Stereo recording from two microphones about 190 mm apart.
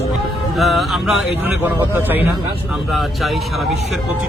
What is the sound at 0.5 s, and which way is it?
Speech, centre (ahead or behind).